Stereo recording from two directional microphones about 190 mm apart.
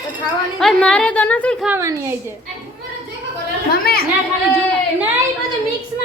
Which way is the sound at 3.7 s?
55° left (ahead or behind).